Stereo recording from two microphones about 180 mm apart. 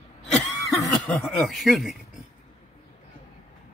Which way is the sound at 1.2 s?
Centre (ahead or behind).